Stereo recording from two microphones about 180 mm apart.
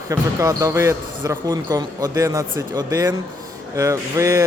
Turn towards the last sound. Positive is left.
turn(degrees=-15)  # may be behind; listen again after turning